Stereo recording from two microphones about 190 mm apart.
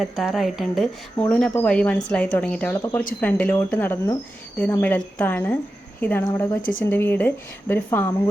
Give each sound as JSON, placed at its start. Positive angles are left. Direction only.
{"t": 0.0, "sound": "speech", "side_deg": 0}
{"t": 1.2, "sound": "speech", "side_deg": 10}
{"t": 6.6, "sound": "speech", "side_deg": 45}
{"t": 6.9, "sound": "speech", "side_deg": 10}